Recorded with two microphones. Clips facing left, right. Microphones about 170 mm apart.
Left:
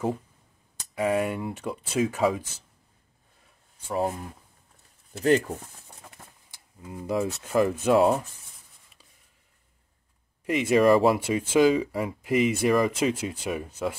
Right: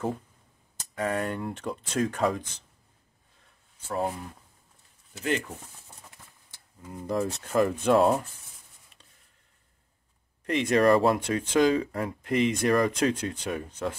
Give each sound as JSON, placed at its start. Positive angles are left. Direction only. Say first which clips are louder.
{"t": 0.9, "sound": "speech", "louder": "left 4 dB", "side_deg": 10}
{"t": 3.8, "sound": "speech", "louder": "left 2 dB", "side_deg": 5}
{"t": 6.2, "sound": "a sound", "louder": "left 5 dB", "side_deg": 50}
{"t": 6.8, "sound": "speech", "louder": "left 1 dB", "side_deg": 5}
{"t": 10.4, "sound": "speech", "louder": "left 2 dB", "side_deg": 5}